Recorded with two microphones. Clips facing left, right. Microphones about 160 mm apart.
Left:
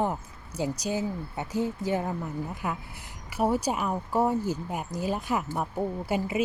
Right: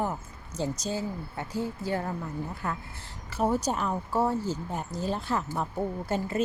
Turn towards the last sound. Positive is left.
turn(degrees=10)  # may be behind; listen again after turning